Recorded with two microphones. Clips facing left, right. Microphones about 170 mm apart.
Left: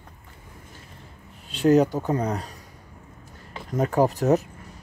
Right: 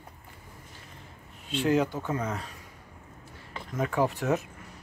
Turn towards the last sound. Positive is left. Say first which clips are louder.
# left 6 dB
turn(degrees=40)  # may be behind; listen again after turning